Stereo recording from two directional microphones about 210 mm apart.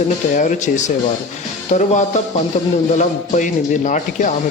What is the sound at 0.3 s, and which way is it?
Speech, 35° left (ahead or behind).